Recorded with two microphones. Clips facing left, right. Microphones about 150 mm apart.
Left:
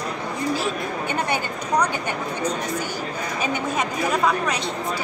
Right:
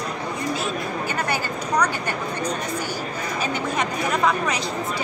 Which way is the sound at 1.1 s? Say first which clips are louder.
Left 2 dB; 20° left (ahead or behind).